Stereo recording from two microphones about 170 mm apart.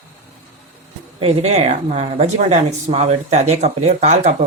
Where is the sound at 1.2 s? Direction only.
40° right (ahead or behind).